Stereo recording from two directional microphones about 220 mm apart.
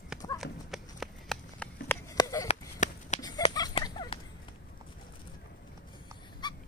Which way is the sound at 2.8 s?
35° left (ahead or behind).